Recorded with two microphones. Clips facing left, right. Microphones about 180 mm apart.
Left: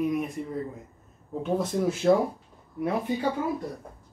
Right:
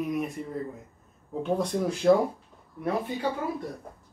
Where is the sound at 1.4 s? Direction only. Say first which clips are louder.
Even; centre (ahead or behind).